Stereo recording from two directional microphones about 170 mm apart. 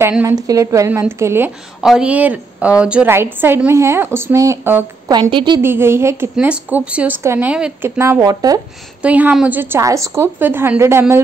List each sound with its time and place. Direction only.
0.1 s a woman's voice: 10° right (ahead or behind)
5.1 s speech: 25° right (ahead or behind)
5.6 s a woman's voice: 15° right (ahead or behind)
8.0 s speech: 15° right (ahead or behind)
9.0 s a woman's voice: 10° right (ahead or behind)